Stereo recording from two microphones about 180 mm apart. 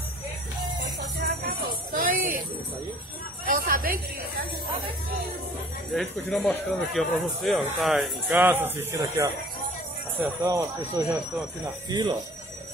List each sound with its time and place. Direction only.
1.1 s music: 60° right (ahead or behind)
3.4 s a woman's voice: 50° right (ahead or behind)
5.9 s speech: 5° left (ahead or behind); by 12.2 s 25° right (ahead or behind)